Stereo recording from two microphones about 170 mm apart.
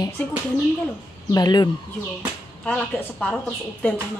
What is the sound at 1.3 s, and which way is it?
Speech, 25° left (ahead or behind).